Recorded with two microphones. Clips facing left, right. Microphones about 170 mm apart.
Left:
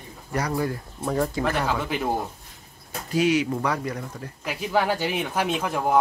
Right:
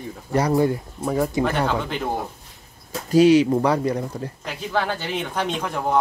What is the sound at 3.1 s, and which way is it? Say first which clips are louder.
Speech: right 8 dB; 35° right (ahead or behind).